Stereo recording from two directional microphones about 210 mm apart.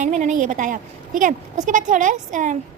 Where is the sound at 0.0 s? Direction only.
35° right (ahead or behind).